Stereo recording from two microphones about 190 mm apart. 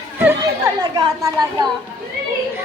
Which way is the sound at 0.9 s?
20° right (ahead or behind).